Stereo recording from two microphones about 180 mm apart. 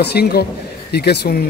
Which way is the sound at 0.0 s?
65° left (ahead or behind).